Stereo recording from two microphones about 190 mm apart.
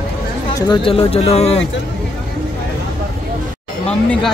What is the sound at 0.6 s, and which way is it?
Speech, 25° left (ahead or behind).